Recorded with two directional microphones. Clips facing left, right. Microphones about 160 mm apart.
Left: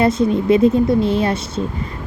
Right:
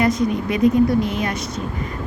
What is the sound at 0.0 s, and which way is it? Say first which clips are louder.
Speech: left 3 dB; 30° left (ahead or behind).